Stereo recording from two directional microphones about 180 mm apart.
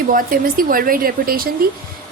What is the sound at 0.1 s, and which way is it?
A woman's voice, 50° right (ahead or behind).